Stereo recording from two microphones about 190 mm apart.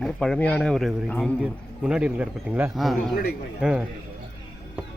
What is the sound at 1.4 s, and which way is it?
A man's voice, 5° right (ahead or behind).